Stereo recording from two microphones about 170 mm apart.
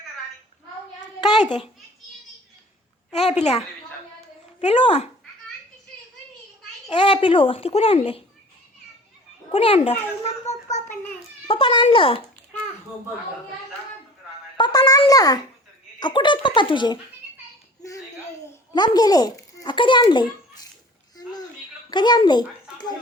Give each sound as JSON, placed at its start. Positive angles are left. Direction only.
{"t": 1.2, "sound": "a sound", "side_deg": 25}
{"t": 3.1, "sound": "a child's voice", "side_deg": 40}
{"t": 4.6, "sound": "a child's voice", "side_deg": 40}
{"t": 6.8, "sound": "a child's voice", "side_deg": 30}
{"t": 9.5, "sound": "a child's voice", "side_deg": 35}
{"t": 14.5, "sound": "a child's voice", "side_deg": 25}
{"t": 18.7, "sound": "a child's voice", "side_deg": 25}
{"t": 21.8, "sound": "speech", "side_deg": 25}